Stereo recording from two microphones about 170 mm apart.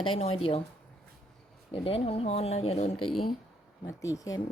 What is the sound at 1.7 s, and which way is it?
Speech, 35° left (ahead or behind).